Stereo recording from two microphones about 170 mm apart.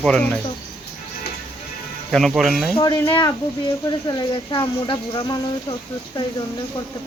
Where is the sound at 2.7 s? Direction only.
25° left (ahead or behind).